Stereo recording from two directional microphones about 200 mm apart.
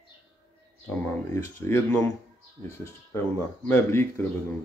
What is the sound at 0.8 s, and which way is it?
Speech, 15° left (ahead or behind).